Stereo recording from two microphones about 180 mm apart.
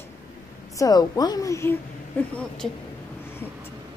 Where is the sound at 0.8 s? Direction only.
20° left (ahead or behind).